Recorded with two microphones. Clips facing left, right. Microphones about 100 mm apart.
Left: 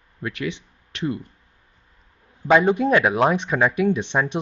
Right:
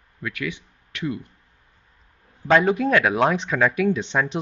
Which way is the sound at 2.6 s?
25° left (ahead or behind).